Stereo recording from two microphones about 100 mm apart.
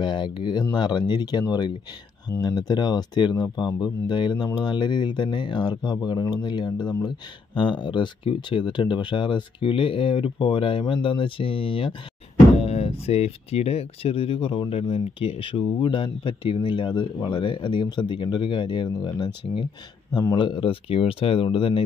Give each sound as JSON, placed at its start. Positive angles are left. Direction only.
{"t": 0.0, "sound": "speech", "side_deg": 50}
{"t": 12.6, "sound": "speech", "side_deg": 85}
{"t": 14.8, "sound": "speech", "side_deg": 90}
{"t": 20.3, "sound": "speech", "side_deg": 60}